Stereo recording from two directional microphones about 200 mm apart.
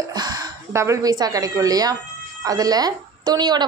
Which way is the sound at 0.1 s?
20° right (ahead or behind).